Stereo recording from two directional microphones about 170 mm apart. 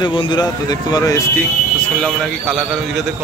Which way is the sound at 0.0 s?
30° left (ahead or behind).